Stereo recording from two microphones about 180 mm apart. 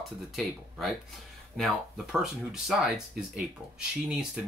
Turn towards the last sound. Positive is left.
turn(degrees=-5)  # may be behind; listen again after turning